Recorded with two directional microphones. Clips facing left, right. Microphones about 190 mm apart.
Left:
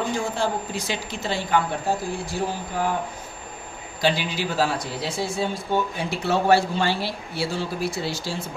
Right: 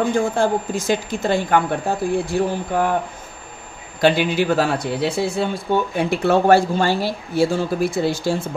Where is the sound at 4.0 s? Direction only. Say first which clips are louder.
Right 7 dB; 55° right (ahead or behind).